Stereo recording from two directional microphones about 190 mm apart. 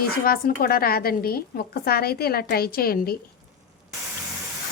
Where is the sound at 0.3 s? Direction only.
50° left (ahead or behind).